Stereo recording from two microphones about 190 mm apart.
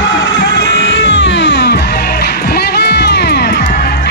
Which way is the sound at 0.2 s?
65° left (ahead or behind).